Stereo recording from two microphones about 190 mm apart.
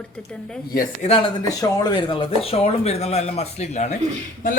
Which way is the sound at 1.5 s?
20° left (ahead or behind).